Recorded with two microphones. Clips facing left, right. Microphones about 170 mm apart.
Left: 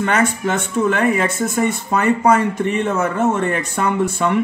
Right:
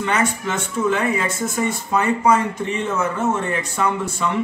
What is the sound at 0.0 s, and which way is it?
Speech, 55° left (ahead or behind).